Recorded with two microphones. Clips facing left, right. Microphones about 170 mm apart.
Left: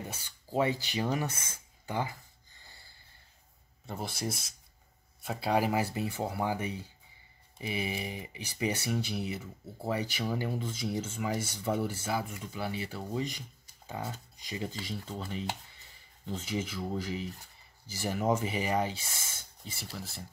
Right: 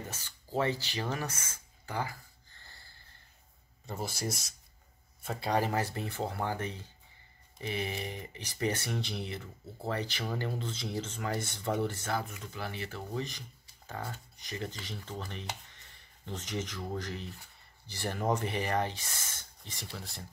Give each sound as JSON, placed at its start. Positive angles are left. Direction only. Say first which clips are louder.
{"t": 0.1, "sound": "speech", "louder": "left 1 dB", "side_deg": 10}
{"t": 1.9, "sound": "a sound", "louder": "left 2 dB", "side_deg": 20}
{"t": 3.8, "sound": "speech", "louder": "even", "side_deg": 0}